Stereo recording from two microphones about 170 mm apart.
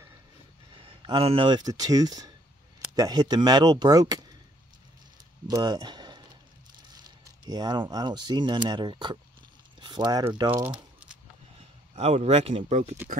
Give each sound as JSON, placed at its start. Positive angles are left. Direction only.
{"t": 0.7, "sound": "speech", "side_deg": -30}
{"t": 5.5, "sound": "speech", "side_deg": -25}
{"t": 10.6, "sound": "crumpling", "side_deg": -5}
{"t": 11.9, "sound": "speech", "side_deg": -35}